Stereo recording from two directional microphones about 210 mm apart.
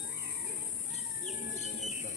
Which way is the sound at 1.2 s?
35° left (ahead or behind).